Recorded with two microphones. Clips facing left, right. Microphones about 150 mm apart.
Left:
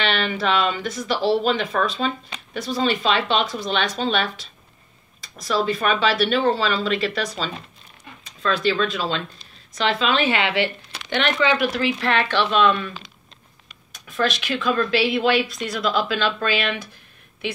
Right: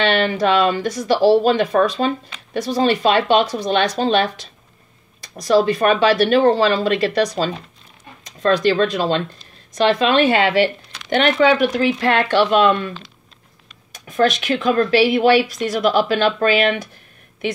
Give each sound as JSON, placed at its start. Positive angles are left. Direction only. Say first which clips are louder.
{"t": 0.0, "sound": "speech", "louder": "right 6 dB", "side_deg": -45}
{"t": 8.7, "sound": "speech", "louder": "right 6 dB", "side_deg": -40}
{"t": 11.5, "sound": "speech", "louder": "right 5 dB", "side_deg": -45}
{"t": 14.0, "sound": "speech", "louder": "right 6 dB", "side_deg": -45}